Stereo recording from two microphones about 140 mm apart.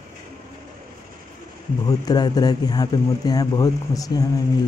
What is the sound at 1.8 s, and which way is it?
Speech, 30° left (ahead or behind).